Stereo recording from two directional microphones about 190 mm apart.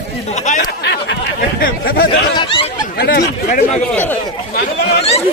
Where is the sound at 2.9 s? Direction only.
50° left (ahead or behind).